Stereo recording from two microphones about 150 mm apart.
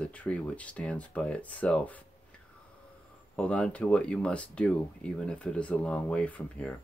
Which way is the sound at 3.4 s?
5° left (ahead or behind).